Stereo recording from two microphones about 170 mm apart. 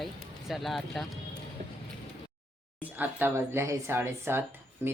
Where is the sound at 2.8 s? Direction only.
10° right (ahead or behind).